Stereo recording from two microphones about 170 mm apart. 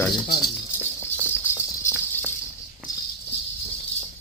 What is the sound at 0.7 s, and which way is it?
Rattle, 10° right (ahead or behind).